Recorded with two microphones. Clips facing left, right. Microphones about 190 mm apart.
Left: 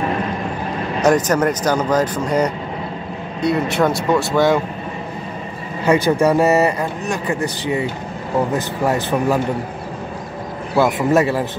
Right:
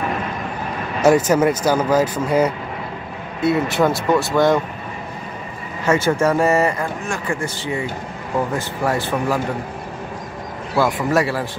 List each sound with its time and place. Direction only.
1.0 s speech: 10° right (ahead or behind)
5.9 s a man's voice: 15° left (ahead or behind)
10.8 s a man's voice: 20° left (ahead or behind)